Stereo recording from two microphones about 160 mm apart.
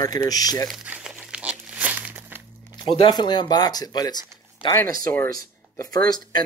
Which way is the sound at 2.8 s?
30° left (ahead or behind).